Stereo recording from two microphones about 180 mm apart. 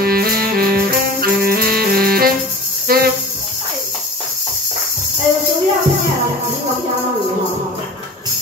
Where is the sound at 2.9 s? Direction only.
55° right (ahead or behind).